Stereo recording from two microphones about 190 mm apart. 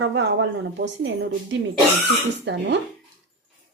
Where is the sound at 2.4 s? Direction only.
65° right (ahead or behind).